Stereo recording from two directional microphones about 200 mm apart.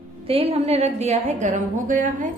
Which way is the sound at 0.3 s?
30° right (ahead or behind).